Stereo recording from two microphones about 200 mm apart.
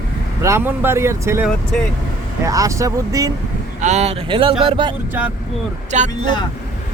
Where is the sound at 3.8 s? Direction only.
35° right (ahead or behind).